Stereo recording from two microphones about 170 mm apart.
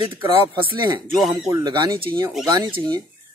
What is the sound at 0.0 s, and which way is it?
Speech, 30° right (ahead or behind).